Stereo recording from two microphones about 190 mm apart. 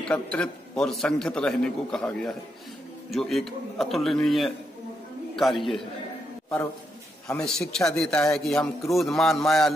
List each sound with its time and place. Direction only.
0.1 s a man's voice: 5° left (ahead or behind)
7.3 s a man's voice: centre (ahead or behind)